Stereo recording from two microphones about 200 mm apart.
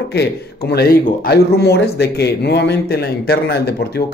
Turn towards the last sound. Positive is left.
turn(degrees=55)  # may be behind; listen again after turning